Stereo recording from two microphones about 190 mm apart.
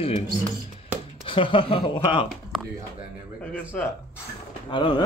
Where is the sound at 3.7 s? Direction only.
5° left (ahead or behind).